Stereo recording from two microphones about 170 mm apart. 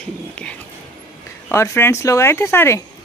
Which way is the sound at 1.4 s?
15° left (ahead or behind).